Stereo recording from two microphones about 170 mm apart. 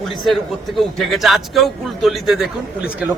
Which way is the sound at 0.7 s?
Centre (ahead or behind).